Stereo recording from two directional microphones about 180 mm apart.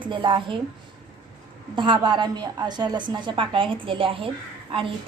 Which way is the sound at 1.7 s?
25° right (ahead or behind).